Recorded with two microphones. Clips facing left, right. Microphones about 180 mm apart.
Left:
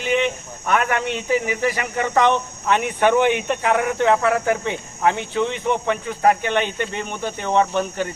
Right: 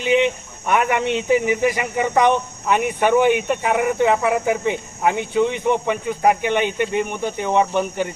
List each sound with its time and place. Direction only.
0.0 s cricket: 15° right (ahead or behind)
0.7 s speech: 15° right (ahead or behind)